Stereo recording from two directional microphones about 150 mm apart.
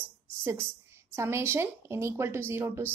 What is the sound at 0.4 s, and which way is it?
A woman's voice, 15° right (ahead or behind).